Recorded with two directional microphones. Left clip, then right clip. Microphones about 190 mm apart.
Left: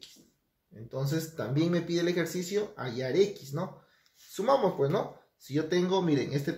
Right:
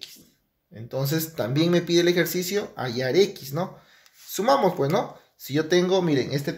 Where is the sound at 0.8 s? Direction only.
50° right (ahead or behind).